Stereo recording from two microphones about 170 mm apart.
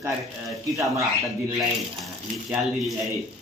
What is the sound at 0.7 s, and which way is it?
Speech, 20° right (ahead or behind).